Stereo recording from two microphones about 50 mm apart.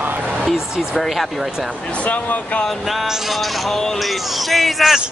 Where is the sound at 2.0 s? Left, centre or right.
Left.